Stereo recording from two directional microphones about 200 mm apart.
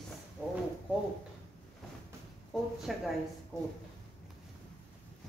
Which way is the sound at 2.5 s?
Centre (ahead or behind).